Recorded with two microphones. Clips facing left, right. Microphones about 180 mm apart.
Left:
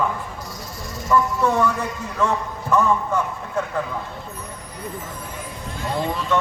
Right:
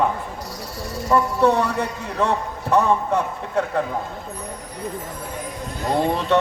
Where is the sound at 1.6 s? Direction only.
65° right (ahead or behind).